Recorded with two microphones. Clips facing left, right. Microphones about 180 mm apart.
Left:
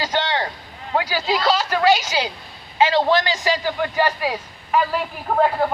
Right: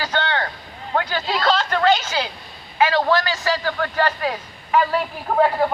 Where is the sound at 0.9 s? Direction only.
10° left (ahead or behind).